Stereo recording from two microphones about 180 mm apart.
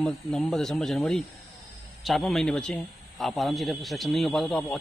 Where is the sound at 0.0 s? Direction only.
Centre (ahead or behind).